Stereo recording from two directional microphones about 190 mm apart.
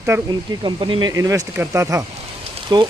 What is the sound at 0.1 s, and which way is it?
Speech, 10° right (ahead or behind).